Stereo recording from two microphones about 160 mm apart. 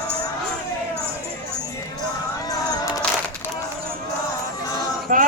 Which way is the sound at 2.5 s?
25° left (ahead or behind).